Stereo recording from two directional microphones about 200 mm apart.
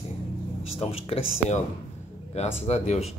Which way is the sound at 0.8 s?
30° left (ahead or behind).